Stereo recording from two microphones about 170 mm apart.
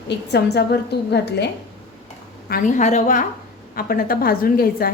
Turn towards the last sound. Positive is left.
turn(degrees=60)  # may be behind; listen again after turning